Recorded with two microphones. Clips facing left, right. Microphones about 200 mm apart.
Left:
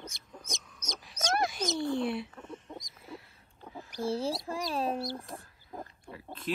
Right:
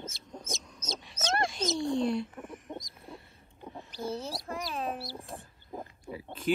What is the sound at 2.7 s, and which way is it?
Owl, centre (ahead or behind).